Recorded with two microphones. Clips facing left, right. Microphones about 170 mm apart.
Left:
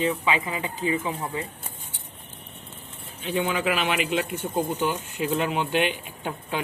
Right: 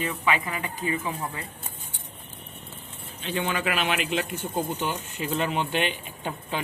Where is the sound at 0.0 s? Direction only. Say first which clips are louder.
Left 2 dB; 20° left (ahead or behind).